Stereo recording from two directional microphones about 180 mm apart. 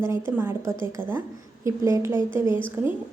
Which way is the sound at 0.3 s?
15° right (ahead or behind).